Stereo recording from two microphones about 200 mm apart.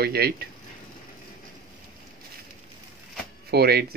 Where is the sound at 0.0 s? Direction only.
50° right (ahead or behind).